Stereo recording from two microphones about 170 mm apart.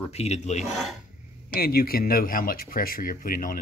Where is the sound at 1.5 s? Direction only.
60° left (ahead or behind).